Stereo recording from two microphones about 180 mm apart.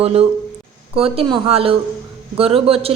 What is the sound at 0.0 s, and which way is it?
A woman's voice, 35° right (ahead or behind).